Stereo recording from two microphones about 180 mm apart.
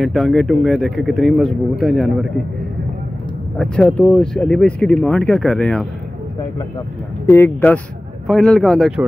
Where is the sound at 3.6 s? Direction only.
5° left (ahead or behind).